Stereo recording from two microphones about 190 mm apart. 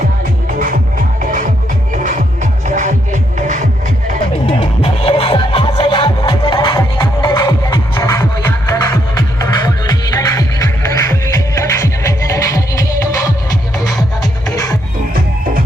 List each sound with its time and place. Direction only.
1.2 s music: 45° right (ahead or behind)
4.4 s music: 30° left (ahead or behind)
14.5 s music: 20° left (ahead or behind)